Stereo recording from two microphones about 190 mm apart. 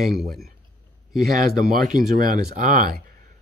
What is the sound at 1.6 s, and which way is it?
Speech, centre (ahead or behind).